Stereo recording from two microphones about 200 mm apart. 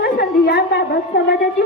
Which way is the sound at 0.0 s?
55° left (ahead or behind).